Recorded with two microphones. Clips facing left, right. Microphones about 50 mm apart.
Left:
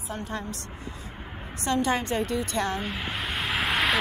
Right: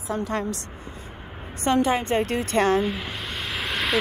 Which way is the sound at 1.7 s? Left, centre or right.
Right.